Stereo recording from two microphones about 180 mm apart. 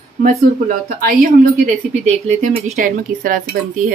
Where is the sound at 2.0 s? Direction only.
40° right (ahead or behind).